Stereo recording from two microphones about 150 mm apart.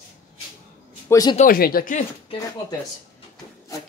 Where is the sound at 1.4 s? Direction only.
80° left.